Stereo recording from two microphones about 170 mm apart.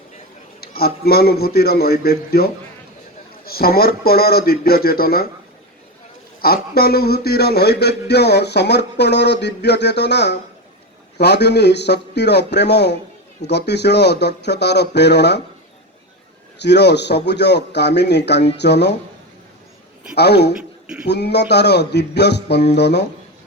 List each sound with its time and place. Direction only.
0.6 s a man's voice: 65° left (ahead or behind)
6.4 s a man's voice: 65° left (ahead or behind); by 15.4 s 80° left
16.6 s speech: 85° left
20.1 s a man's voice: 75° left (ahead or behind)
20.6 s a sound: 5° right (ahead or behind)
21.1 s speech: 80° left